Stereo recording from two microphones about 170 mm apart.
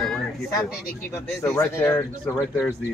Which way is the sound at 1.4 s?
15° left (ahead or behind).